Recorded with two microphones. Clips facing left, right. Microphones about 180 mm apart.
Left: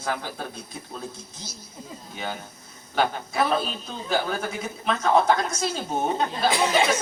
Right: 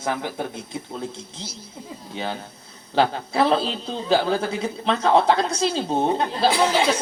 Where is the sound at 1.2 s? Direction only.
30° right (ahead or behind).